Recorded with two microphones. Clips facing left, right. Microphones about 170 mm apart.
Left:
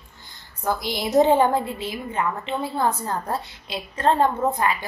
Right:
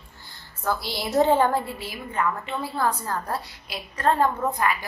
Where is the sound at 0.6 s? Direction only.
20° left (ahead or behind).